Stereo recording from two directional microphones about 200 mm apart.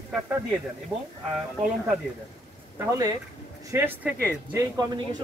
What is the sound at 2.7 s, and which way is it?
Speech, 15° right (ahead or behind).